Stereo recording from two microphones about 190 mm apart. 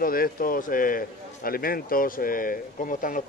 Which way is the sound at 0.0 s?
50° left (ahead or behind).